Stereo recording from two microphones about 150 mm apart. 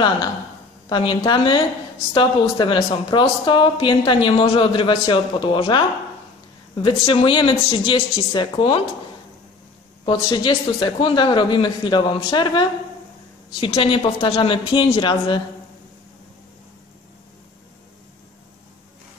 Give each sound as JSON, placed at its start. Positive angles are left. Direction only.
{"t": 0.8, "sound": "a woman's voice", "side_deg": 30}
{"t": 10.0, "sound": "a woman's voice", "side_deg": 30}
{"t": 13.7, "sound": "a woman's voice", "side_deg": 35}